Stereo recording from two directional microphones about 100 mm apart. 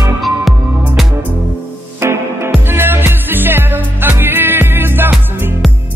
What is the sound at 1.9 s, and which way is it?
Music, 20° right (ahead or behind).